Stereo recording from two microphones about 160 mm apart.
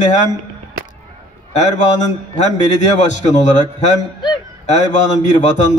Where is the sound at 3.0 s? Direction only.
50° left (ahead or behind).